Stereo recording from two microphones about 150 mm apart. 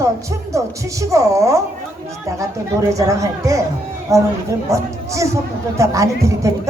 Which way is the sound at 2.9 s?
20° right (ahead or behind).